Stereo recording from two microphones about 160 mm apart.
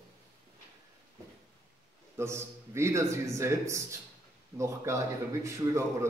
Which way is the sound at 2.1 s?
15° right (ahead or behind).